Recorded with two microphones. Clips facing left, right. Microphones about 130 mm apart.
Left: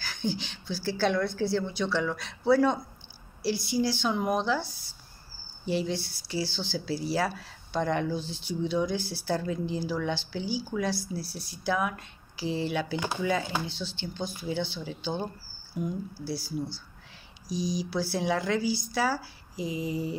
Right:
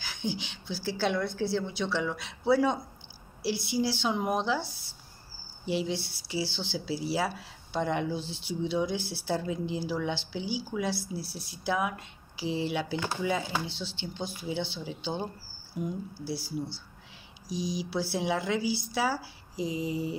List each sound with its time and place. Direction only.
0.0 s speech: 20° right (ahead or behind)
5.7 s speech: 20° right (ahead or behind)
12.9 s speech: 20° left (ahead or behind)
13.2 s speech: 20° right (ahead or behind)
16.3 s speech: 25° right (ahead or behind)